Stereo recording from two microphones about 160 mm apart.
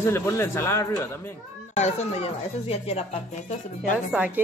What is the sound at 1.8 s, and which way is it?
Speech, 45° left (ahead or behind).